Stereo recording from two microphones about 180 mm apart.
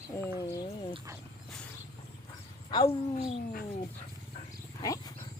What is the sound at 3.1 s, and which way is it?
Cat, 50° left (ahead or behind).